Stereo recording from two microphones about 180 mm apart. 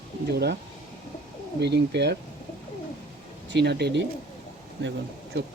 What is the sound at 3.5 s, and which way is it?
Speech, 70° right (ahead or behind).